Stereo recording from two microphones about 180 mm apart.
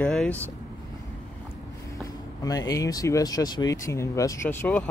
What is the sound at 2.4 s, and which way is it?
Speech, 20° left (ahead or behind).